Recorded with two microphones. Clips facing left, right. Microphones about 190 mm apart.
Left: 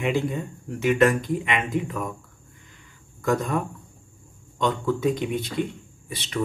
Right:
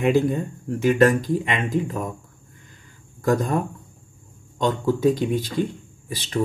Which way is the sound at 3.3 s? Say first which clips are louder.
Right 3 dB; 35° right (ahead or behind).